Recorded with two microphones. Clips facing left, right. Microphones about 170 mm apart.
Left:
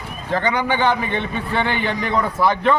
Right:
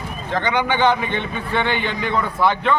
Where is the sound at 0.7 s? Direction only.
35° left (ahead or behind).